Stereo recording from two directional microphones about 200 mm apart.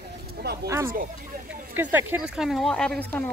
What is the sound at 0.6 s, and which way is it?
Speech, 15° right (ahead or behind).